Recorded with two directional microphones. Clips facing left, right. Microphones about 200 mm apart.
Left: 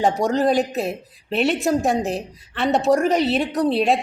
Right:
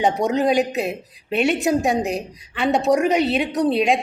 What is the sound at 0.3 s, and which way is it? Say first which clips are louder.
A woman's voice: even; centre (ahead or behind).